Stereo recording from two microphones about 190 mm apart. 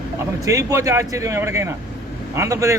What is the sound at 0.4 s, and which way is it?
A man's voice, 15° right (ahead or behind).